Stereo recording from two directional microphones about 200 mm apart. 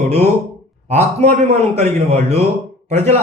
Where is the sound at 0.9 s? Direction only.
35° right (ahead or behind).